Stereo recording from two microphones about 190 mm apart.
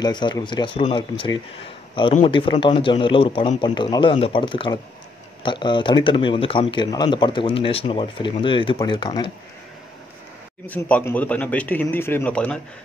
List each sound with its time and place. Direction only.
0.0 s speech: 25° left (ahead or behind)
10.7 s a man's voice: 10° left (ahead or behind)